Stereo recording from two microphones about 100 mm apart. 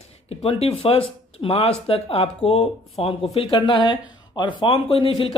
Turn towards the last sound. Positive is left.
turn(degrees=60)  # may be behind; listen again after turning